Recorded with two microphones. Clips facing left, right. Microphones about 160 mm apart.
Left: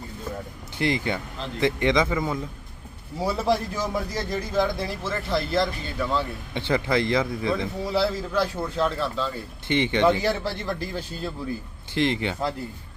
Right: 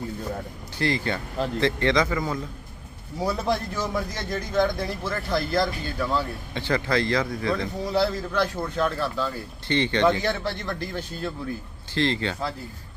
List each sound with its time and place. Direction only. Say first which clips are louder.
0.8 s a man's voice: left 1 dB; 20° left (ahead or behind)
3.2 s a man's voice: left 2 dB; 5° left (ahead or behind)
6.5 s speech: left 1 dB; 20° left (ahead or behind)
7.5 s speech: right 1 dB; 5° left (ahead or behind)
9.6 s a man's voice: left 1 dB; 15° left (ahead or behind)